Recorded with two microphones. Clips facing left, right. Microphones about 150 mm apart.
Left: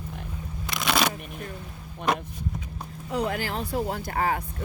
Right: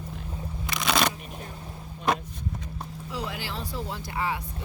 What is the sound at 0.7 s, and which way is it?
Shuffling cards, centre (ahead or behind).